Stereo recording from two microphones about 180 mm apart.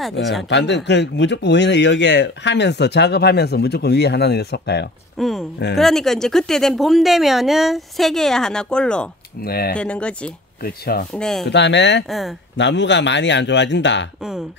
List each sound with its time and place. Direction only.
0.2 s speech: centre (ahead or behind)
0.5 s speech: 75° left (ahead or behind)
5.1 s speech: centre (ahead or behind)
9.4 s speech: 55° left (ahead or behind)
9.8 s speech: 5° left (ahead or behind)
10.6 s speech: 60° left (ahead or behind)
11.1 s speech: 5° left (ahead or behind)
11.4 s speech: 75° left (ahead or behind)
12.1 s speech: centre (ahead or behind)
12.5 s speech: 80° left